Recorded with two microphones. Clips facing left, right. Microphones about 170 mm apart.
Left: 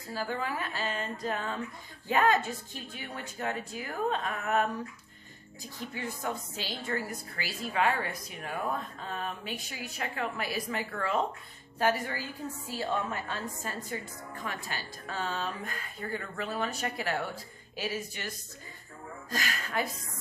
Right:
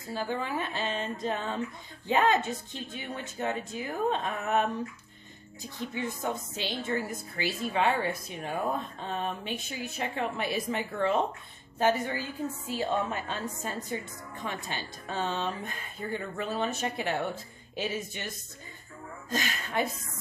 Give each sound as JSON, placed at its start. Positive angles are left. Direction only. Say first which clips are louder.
{"t": 0.1, "sound": "a woman's voice", "louder": "right 2 dB", "side_deg": -20}
{"t": 5.9, "sound": "a woman's voice", "louder": "right 3 dB", "side_deg": -20}
{"t": 19.3, "sound": "a woman's voice", "louder": "right 2 dB", "side_deg": -25}